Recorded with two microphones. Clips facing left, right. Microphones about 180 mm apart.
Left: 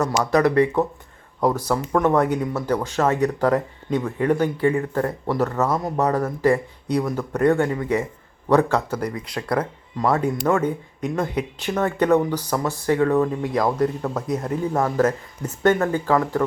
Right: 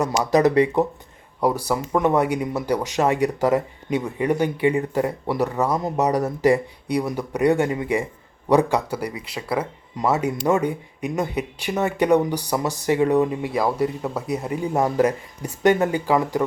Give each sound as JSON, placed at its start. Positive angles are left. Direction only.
{"t": 0.0, "sound": "speech", "side_deg": -15}